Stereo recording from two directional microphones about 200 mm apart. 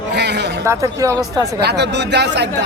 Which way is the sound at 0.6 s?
15° right (ahead or behind).